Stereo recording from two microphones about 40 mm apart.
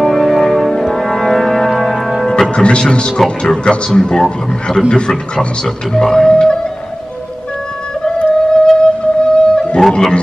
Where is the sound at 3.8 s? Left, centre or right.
Centre.